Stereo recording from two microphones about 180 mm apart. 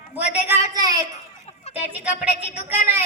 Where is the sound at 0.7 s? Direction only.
20° right (ahead or behind).